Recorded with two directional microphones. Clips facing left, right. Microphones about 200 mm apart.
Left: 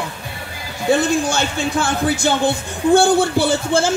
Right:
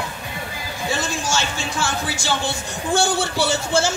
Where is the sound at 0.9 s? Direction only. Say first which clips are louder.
Left 9 dB; 55° left (ahead or behind).